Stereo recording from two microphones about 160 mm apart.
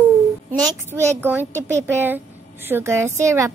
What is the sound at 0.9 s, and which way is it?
A woman's voice, 15° right (ahead or behind).